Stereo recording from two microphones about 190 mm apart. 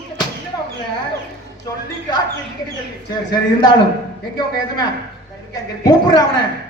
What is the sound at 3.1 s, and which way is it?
Speech, 20° left (ahead or behind).